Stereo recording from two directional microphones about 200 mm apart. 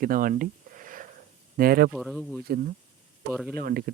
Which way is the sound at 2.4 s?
50° right (ahead or behind).